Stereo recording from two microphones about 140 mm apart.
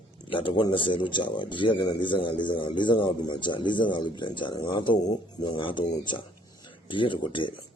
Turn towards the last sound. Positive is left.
turn(degrees=35)  # may be behind; listen again after turning